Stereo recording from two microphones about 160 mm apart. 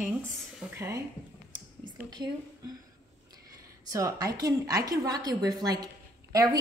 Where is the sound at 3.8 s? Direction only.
20° right (ahead or behind).